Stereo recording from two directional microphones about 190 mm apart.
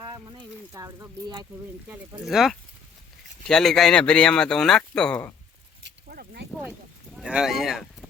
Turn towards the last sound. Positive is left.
turn(degrees=0)  # may be behind; listen again after turning